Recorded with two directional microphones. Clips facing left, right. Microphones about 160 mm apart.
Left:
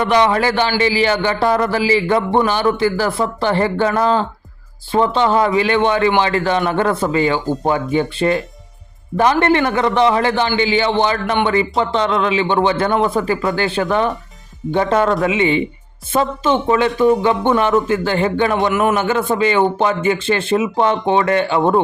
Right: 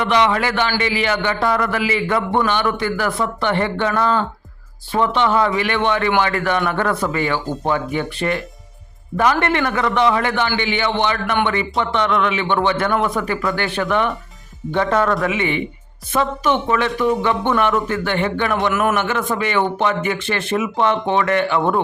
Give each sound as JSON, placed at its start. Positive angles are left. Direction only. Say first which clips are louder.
{"t": 0.0, "sound": "a man's voice", "louder": "left 3 dB", "side_deg": 40}
{"t": 18.7, "sound": "a man's voice", "louder": "left 3 dB", "side_deg": 15}
{"t": 18.9, "sound": "a man's voice", "louder": "left 4 dB", "side_deg": 30}